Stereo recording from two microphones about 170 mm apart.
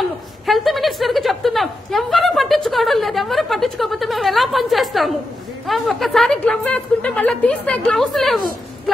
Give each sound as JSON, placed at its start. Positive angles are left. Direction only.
{"t": 0.5, "sound": "a woman's voice", "side_deg": 0}